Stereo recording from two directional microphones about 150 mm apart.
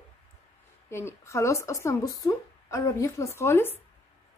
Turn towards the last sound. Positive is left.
turn(degrees=15)  # may be behind; listen again after turning